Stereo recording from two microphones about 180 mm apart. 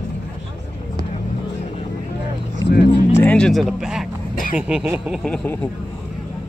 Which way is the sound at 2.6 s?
20° left (ahead or behind).